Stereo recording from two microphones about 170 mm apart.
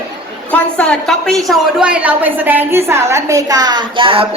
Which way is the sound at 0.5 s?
5° left (ahead or behind).